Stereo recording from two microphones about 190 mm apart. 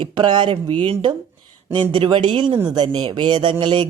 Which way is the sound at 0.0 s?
25° right (ahead or behind).